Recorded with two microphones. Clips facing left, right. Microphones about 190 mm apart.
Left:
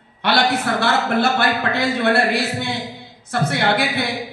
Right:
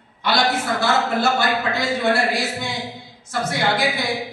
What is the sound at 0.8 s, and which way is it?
A man's voice, 60° left (ahead or behind).